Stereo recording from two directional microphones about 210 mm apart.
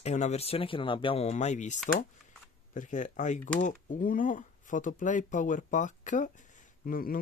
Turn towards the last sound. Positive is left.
turn(degrees=40)  # may be behind; listen again after turning